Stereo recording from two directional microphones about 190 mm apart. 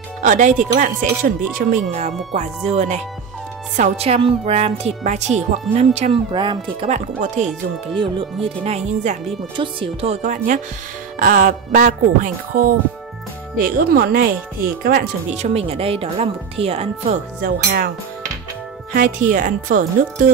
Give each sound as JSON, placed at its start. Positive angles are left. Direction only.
{"t": 0.2, "sound": "speech", "side_deg": -40}
{"t": 1.9, "sound": "speech", "side_deg": -35}
{"t": 8.0, "sound": "speech", "side_deg": -30}
{"t": 13.7, "sound": "speech", "side_deg": -55}
{"t": 15.3, "sound": "speech", "side_deg": -35}
{"t": 17.4, "sound": "speech", "side_deg": -50}
{"t": 18.9, "sound": "speech", "side_deg": -50}